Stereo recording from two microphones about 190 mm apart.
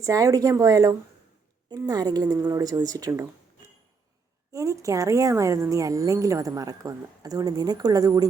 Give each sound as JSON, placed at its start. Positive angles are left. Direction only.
{"t": 0.0, "sound": "a woman's voice", "side_deg": -20}
{"t": 4.5, "sound": "a woman's voice", "side_deg": -15}